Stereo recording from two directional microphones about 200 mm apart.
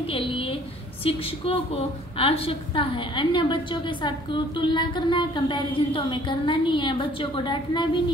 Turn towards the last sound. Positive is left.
turn(degrees=25)  # may be behind; listen again after turning